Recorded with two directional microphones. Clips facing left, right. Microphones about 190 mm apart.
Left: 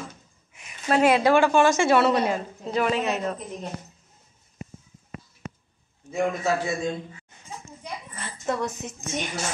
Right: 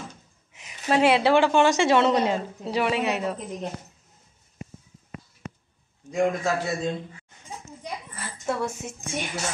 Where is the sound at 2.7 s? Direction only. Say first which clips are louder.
Even; 10° right (ahead or behind).